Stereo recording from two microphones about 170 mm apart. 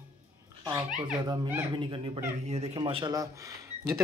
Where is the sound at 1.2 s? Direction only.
25° right (ahead or behind).